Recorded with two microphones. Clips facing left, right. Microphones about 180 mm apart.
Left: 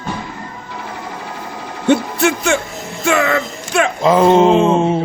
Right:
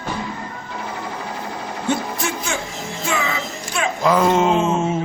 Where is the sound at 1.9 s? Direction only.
70° left (ahead or behind).